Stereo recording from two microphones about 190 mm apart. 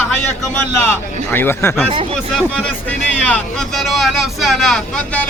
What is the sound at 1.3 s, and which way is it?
Speech, 10° left (ahead or behind).